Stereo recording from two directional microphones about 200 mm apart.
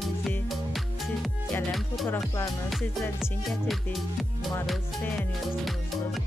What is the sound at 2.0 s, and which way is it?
Music, 15° left (ahead or behind).